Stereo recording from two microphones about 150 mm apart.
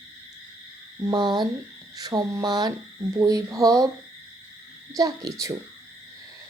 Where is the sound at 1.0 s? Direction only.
30° right (ahead or behind).